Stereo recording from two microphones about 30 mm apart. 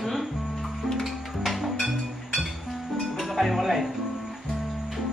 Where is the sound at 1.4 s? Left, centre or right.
Centre.